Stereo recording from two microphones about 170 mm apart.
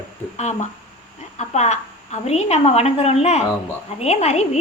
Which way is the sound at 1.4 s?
40° left (ahead or behind).